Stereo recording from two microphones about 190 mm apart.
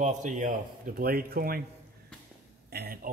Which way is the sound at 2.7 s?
55° right (ahead or behind).